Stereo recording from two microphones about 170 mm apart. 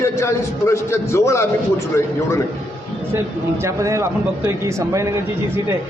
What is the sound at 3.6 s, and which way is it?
Speech, 15° right (ahead or behind).